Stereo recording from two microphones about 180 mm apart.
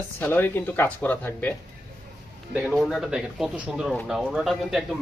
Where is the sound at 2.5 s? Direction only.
5° right (ahead or behind).